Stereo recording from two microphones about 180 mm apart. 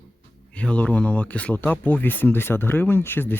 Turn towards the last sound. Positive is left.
turn(degrees=10)  # may be behind; listen again after turning